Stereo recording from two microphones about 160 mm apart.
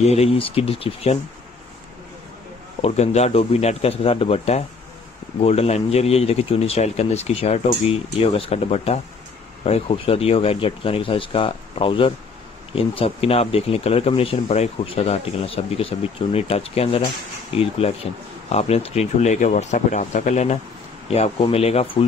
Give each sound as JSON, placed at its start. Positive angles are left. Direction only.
{"t": 0.0, "sound": "speech", "side_deg": 40}
{"t": 2.8, "sound": "speech", "side_deg": 40}